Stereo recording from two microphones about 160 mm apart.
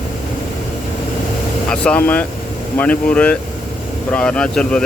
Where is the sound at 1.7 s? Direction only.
10° left (ahead or behind).